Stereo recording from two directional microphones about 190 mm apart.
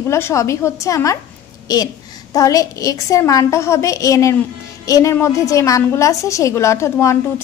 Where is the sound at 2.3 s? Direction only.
20° left (ahead or behind).